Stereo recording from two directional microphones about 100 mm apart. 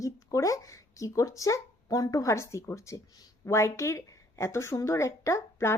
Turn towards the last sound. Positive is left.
turn(degrees=30)  # may be behind; listen again after turning